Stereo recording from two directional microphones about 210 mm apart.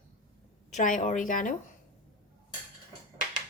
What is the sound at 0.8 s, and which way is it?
Speech, 35° left (ahead or behind).